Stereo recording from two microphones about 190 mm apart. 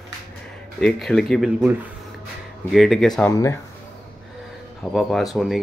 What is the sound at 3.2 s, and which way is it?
Speech, 15° left (ahead or behind).